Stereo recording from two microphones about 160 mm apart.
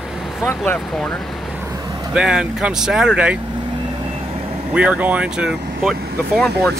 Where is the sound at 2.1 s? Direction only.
5° right (ahead or behind).